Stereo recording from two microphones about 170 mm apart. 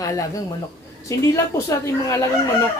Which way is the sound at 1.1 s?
15° left (ahead or behind).